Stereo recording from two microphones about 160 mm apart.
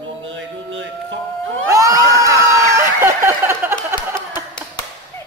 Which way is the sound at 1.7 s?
20° right (ahead or behind).